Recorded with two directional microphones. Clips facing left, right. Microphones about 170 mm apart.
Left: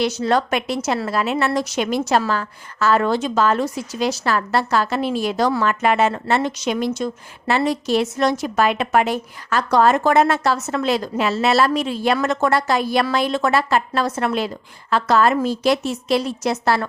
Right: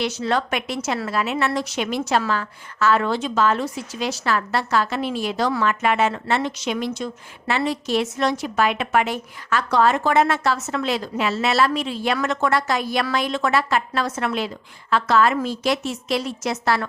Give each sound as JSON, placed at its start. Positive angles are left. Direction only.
{"t": 0.0, "sound": "a woman's voice", "side_deg": 40}